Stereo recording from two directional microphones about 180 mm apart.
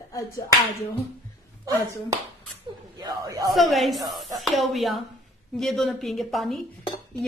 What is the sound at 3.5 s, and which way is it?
Speech, centre (ahead or behind).